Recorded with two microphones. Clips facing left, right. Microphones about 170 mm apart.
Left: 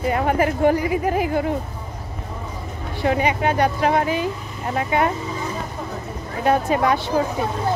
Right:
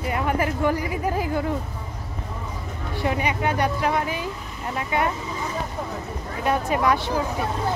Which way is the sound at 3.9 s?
25° left (ahead or behind).